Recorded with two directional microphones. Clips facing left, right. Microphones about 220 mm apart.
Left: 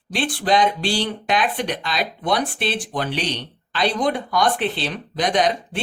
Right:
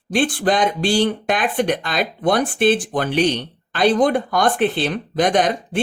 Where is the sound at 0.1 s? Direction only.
50° right (ahead or behind).